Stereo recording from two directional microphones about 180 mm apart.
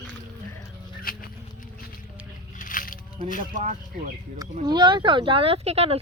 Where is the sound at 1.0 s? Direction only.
55° left (ahead or behind).